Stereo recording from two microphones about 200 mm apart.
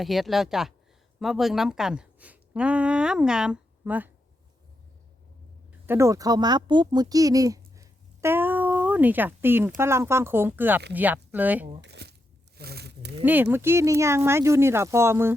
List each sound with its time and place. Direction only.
0.0 s a woman's voice: centre (ahead or behind)
5.8 s speech: 10° right (ahead or behind)
11.8 s speech: 55° right (ahead or behind)
12.5 s a sound: 55° right (ahead or behind)
13.2 s speech: 10° right (ahead or behind)